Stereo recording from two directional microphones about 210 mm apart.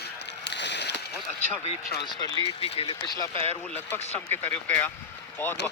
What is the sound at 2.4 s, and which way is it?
Speech, 25° left (ahead or behind).